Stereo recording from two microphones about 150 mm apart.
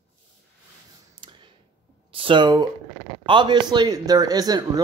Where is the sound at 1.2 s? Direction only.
35° right (ahead or behind).